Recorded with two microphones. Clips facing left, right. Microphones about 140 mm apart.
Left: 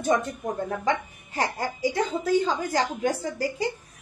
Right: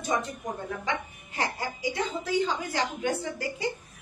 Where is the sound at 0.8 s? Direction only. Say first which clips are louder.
Left 6 dB; 40° left (ahead or behind).